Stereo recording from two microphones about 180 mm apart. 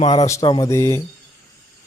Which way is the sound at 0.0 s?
35° left (ahead or behind).